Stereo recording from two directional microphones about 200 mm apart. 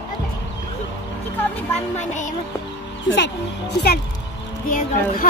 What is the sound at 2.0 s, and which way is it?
Music, 35° left (ahead or behind).